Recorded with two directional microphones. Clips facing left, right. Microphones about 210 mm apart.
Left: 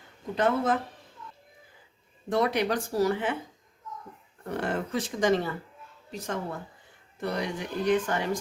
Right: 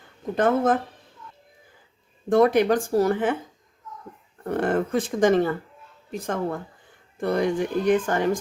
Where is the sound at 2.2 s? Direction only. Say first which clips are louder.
Right 8 dB; 50° right (ahead or behind).